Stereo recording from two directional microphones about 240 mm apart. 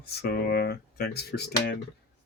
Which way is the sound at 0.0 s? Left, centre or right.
Left.